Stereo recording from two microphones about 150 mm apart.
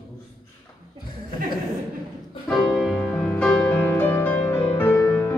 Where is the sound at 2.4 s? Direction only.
Centre (ahead or behind).